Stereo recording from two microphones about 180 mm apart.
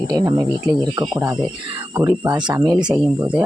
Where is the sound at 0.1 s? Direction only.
20° right (ahead or behind).